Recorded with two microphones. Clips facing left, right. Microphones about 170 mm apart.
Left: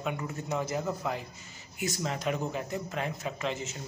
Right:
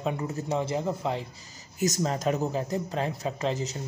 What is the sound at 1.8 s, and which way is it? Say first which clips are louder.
Speech: right 6 dB; 40° right (ahead or behind).